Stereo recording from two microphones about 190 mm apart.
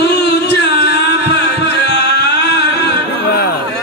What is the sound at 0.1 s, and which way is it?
Music, 60° left (ahead or behind).